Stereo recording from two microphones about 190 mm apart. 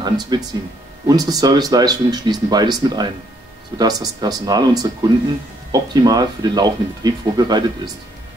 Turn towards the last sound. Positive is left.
turn(degrees=-20)  # may be behind; listen again after turning